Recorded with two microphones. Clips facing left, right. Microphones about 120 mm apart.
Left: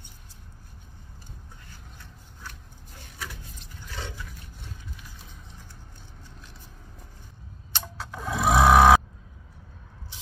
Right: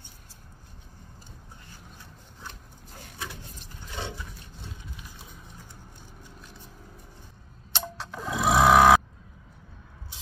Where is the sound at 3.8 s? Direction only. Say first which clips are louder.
Right 2 dB; 20° right (ahead or behind).